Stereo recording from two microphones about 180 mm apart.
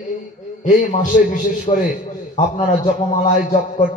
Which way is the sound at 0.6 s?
45° left (ahead or behind).